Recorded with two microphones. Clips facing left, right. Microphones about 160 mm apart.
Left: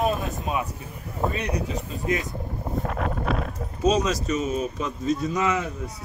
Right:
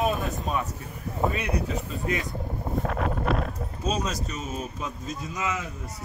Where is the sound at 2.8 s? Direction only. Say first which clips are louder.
Even; centre (ahead or behind).